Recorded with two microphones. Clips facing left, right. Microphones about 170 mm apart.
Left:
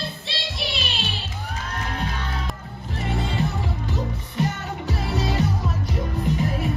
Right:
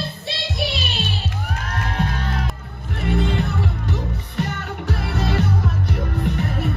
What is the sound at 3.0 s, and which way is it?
Music, 65° right (ahead or behind).